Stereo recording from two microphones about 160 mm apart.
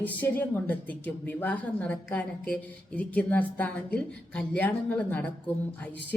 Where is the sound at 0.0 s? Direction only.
10° left (ahead or behind).